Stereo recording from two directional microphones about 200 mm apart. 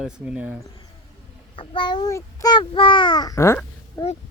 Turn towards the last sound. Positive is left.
turn(degrees=15)  # may be behind; listen again after turning